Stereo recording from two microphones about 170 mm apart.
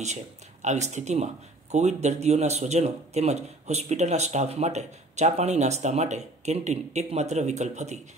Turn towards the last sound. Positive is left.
turn(degrees=-40)  # may be behind; listen again after turning